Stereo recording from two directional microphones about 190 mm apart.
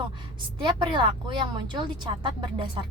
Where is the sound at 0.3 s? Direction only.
25° right (ahead or behind).